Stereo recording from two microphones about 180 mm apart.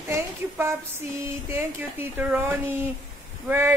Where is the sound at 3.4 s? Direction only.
10° right (ahead or behind).